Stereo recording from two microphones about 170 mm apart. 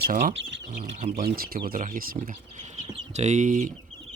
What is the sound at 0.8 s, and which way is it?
Speech, 40° right (ahead or behind).